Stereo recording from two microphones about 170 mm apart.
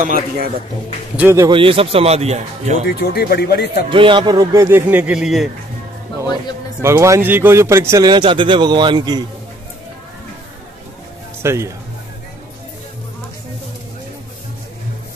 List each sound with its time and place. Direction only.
0.0 s a man's voice: 55° right (ahead or behind)
1.1 s speech: 15° right (ahead or behind)
1.5 s a man's voice: 35° right (ahead or behind)
2.9 s speech: 70° left (ahead or behind)
3.9 s speech: 30° right (ahead or behind); by 5.5 s centre (ahead or behind)
6.8 s a man's voice: 15° right (ahead or behind)
11.4 s speech: 15° right (ahead or behind)